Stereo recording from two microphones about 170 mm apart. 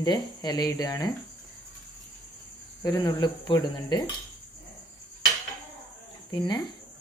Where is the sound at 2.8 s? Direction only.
25° left (ahead or behind).